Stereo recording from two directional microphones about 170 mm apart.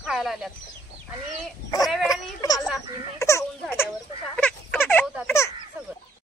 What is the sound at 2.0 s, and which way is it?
Speech, 20° left (ahead or behind).